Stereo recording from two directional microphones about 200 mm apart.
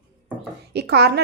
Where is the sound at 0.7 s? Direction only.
55° right (ahead or behind).